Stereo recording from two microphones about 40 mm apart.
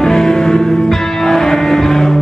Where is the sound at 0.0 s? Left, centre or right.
Centre.